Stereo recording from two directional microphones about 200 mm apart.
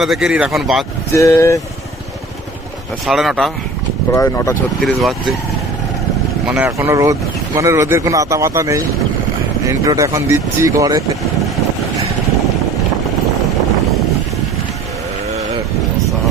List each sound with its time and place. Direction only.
0.0 s speech: centre (ahead or behind)
1.1 s speech: 15° left (ahead or behind)
3.1 s speech: centre (ahead or behind)
4.1 s speech: 15° left (ahead or behind)
4.8 s speech: centre (ahead or behind)
6.5 s speech: 10° right (ahead or behind)